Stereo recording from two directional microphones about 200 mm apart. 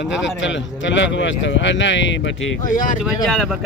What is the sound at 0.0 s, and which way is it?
Speech, 65° left (ahead or behind).